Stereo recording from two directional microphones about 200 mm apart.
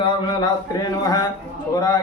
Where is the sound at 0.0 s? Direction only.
20° left (ahead or behind).